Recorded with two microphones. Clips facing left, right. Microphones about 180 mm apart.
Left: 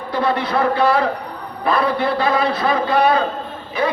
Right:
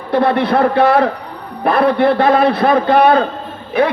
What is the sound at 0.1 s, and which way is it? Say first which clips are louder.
A man's voice: right 6 dB; 60° right (ahead or behind).